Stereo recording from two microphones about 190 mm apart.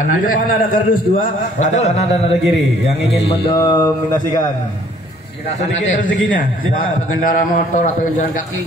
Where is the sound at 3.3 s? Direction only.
25° left (ahead or behind).